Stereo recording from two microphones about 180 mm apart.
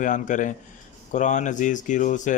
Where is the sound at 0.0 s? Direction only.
45° left (ahead or behind).